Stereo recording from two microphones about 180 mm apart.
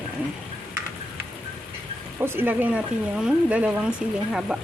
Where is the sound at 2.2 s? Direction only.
10° right (ahead or behind).